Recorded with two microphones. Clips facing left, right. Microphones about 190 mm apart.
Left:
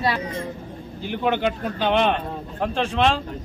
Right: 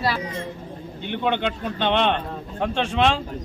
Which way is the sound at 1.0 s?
5° left (ahead or behind).